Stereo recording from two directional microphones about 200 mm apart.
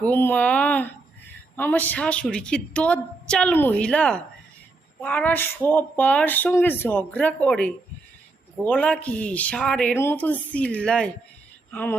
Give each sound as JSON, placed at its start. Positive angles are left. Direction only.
{"t": 0.0, "sound": "a woman's voice", "side_deg": 10}